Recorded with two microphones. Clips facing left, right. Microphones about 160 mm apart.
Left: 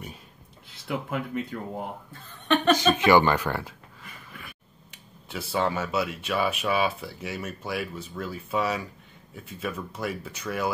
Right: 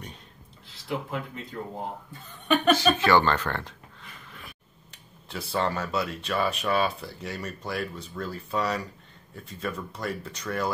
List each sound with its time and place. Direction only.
0.8 s speech: 60° left (ahead or behind)
2.4 s a sound: 5° right (ahead or behind)
2.7 s speech: 20° left (ahead or behind)
4.9 s speech: centre (ahead or behind)